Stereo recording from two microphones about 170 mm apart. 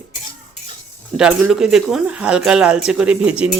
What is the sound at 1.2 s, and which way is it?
Speech, 5° right (ahead or behind).